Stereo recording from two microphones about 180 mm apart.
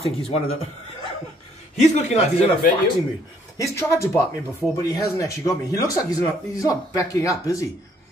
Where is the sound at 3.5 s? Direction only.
15° left (ahead or behind).